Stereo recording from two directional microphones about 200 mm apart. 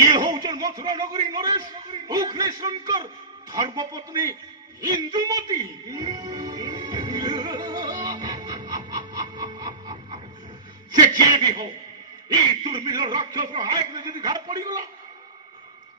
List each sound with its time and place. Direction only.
0.0 s a sound: 20° right (ahead or behind)
1.9 s music: 20° right (ahead or behind)
3.5 s a man's voice: 20° right (ahead or behind)
4.8 s music: 20° right (ahead or behind)
8.7 s a sound: 20° right (ahead or behind)
10.9 s a man's voice: 20° right (ahead or behind)